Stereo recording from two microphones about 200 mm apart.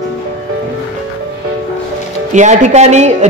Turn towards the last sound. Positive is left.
turn(degrees=-35)  # may be behind; listen again after turning